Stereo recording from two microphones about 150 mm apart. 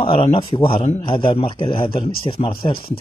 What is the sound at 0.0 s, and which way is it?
Speech, 40° left (ahead or behind).